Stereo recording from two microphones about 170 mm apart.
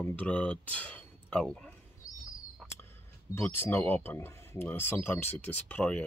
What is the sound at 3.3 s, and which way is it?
Speech, 15° left (ahead or behind).